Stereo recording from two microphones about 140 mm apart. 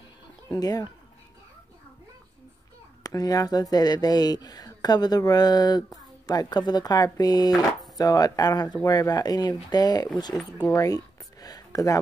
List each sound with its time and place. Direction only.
0.5 s speech: 25° left (ahead or behind)
3.0 s speech: 25° left (ahead or behind)